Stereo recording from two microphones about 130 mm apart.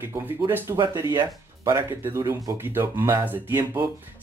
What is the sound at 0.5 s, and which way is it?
Speech, 15° right (ahead or behind).